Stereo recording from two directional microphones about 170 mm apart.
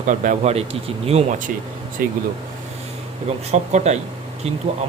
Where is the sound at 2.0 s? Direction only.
60° right (ahead or behind).